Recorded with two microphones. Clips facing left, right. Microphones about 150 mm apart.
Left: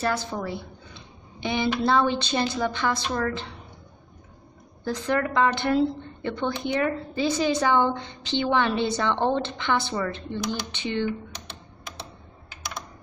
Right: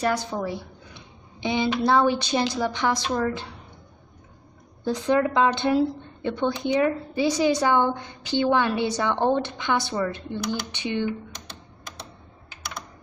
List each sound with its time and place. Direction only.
0.0 s a woman's voice: 15° right (ahead or behind)
4.8 s a woman's voice: 15° right (ahead or behind)